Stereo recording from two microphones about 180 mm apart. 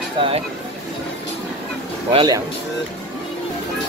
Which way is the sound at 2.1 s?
25° right (ahead or behind).